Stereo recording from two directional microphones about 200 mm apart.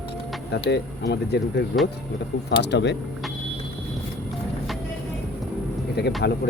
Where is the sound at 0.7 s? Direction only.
55° left (ahead or behind).